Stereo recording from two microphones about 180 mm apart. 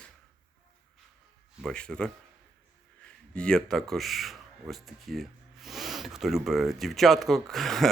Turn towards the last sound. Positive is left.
turn(degrees=0)  # may be behind; listen again after turning